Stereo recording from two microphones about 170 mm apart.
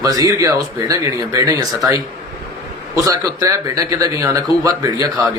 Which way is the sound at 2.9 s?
20° right (ahead or behind).